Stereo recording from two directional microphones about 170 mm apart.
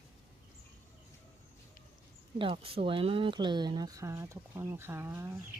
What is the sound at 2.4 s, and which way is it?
Speech, 30° right (ahead or behind).